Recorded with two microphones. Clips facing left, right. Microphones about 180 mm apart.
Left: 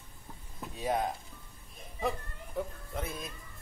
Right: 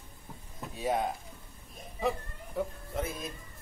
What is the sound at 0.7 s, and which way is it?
Speech, centre (ahead or behind).